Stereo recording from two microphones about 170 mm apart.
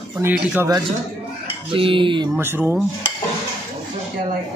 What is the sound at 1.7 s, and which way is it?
Speech, 30° right (ahead or behind).